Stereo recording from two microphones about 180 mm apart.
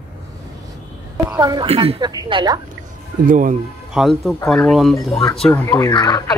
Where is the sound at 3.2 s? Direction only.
45° right (ahead or behind).